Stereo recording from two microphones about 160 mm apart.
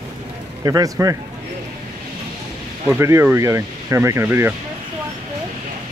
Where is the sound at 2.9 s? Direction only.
15° right (ahead or behind).